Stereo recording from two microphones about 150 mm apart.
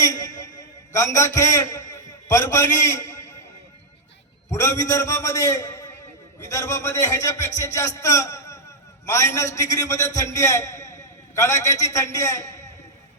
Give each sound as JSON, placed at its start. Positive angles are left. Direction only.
{"t": 0.0, "sound": "a sound", "side_deg": 20}
{"t": 0.9, "sound": "a man's voice", "side_deg": 20}
{"t": 4.5, "sound": "a man's voice", "side_deg": 20}